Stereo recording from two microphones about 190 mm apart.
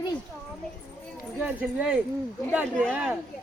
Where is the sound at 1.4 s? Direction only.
10° right (ahead or behind).